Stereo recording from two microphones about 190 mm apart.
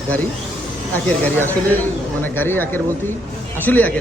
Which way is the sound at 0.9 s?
10° left (ahead or behind).